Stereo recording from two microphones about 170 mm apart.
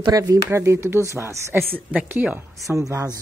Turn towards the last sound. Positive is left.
turn(degrees=-20)  # may be behind; listen again after turning